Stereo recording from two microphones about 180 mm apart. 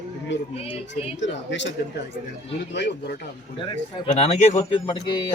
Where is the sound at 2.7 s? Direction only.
70° left (ahead or behind).